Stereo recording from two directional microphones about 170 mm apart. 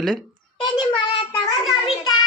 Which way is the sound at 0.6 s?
25° left (ahead or behind).